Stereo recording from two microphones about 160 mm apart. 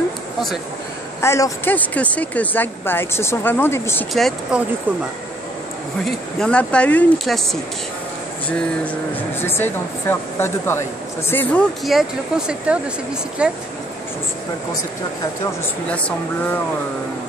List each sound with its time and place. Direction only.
1.2 s speech: 15° left (ahead or behind)
4.1 s speech: 5° right (ahead or behind)
6.0 s speech: 5° left (ahead or behind)
8.5 s speech: 10° left (ahead or behind)
11.8 s speech: centre (ahead or behind)
15.9 s speech: 10° left (ahead or behind)